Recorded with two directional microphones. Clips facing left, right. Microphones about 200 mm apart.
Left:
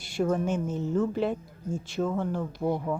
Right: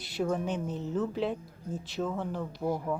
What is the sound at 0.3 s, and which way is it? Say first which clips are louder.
Speech: left 4 dB; centre (ahead or behind).